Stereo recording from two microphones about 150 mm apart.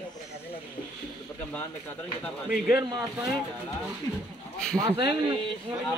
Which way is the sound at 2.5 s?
5° right (ahead or behind).